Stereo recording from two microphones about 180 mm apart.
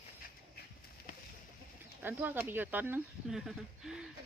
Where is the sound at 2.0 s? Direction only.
10° right (ahead or behind).